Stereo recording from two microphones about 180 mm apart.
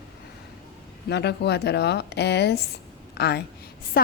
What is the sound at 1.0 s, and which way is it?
A woman's voice, 65° left (ahead or behind).